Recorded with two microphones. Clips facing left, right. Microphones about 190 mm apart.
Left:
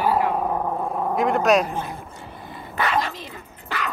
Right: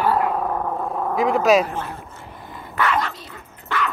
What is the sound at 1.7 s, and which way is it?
Speech, 15° left (ahead or behind).